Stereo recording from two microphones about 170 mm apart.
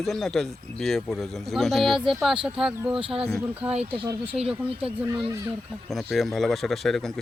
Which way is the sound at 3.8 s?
30° right (ahead or behind).